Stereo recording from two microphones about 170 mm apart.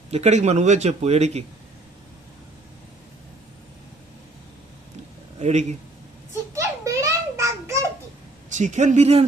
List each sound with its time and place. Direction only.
0.1 s a man's voice: 40° right (ahead or behind)
5.4 s speech: 40° right (ahead or behind)
6.5 s a sound: 20° right (ahead or behind)
8.4 s speech: 45° right (ahead or behind)